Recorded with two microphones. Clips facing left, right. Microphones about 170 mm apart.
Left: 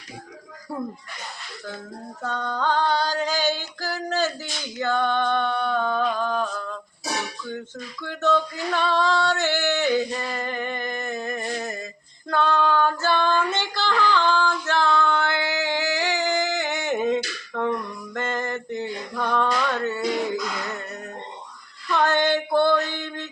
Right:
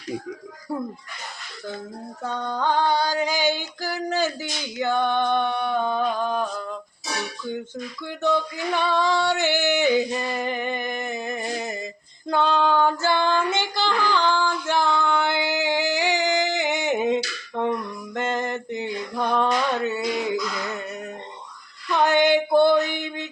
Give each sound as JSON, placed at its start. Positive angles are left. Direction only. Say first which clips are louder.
{"t": 2.2, "sound": "female singing", "louder": "right 1 dB", "side_deg": -15}
{"t": 8.0, "sound": "female singing", "louder": "left 1 dB", "side_deg": -15}
{"t": 21.9, "sound": "female singing", "louder": "right 3 dB", "side_deg": -15}